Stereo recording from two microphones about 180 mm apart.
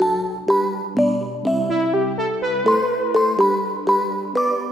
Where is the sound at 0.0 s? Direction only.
Centre (ahead or behind).